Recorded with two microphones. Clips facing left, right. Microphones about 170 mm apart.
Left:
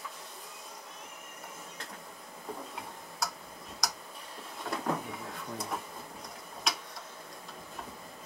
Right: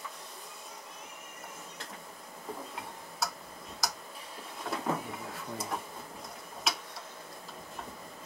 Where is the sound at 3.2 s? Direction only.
Centre (ahead or behind).